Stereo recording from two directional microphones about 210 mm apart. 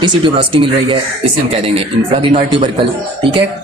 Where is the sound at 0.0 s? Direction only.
25° right (ahead or behind).